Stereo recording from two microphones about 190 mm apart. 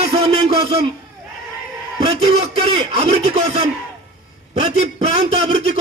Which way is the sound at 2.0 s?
30° right (ahead or behind).